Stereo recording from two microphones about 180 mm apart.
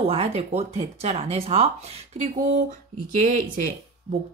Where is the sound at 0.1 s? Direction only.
30° right (ahead or behind).